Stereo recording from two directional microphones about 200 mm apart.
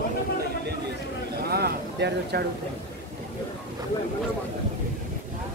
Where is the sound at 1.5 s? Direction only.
55° right (ahead or behind).